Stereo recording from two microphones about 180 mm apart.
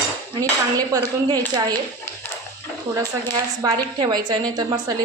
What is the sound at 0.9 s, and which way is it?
Speech, 20° right (ahead or behind).